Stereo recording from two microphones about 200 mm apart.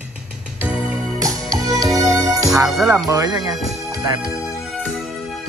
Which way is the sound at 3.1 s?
20° right (ahead or behind).